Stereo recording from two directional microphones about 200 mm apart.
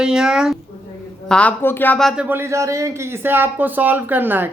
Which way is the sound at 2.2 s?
10° right (ahead or behind).